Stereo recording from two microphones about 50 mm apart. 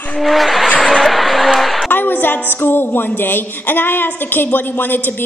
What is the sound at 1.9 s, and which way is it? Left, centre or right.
Speech, left.